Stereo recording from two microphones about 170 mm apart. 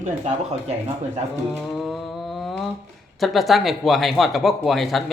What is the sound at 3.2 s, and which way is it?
Speech, centre (ahead or behind).